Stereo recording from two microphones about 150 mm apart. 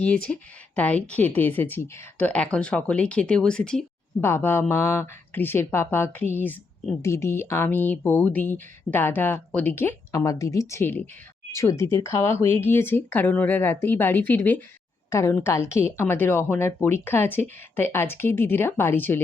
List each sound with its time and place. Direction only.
0.0 s speech: 10° left (ahead or behind)
4.2 s speech: 15° left (ahead or behind)